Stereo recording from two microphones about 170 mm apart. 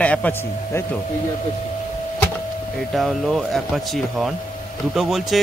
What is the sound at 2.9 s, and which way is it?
A man's voice, centre (ahead or behind).